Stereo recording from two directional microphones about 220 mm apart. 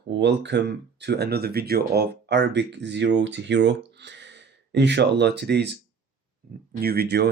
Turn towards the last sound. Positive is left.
turn(degrees=-45)  # may be behind; listen again after turning